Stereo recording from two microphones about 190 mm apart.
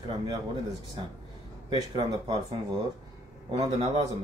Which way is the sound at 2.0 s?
20° right (ahead or behind).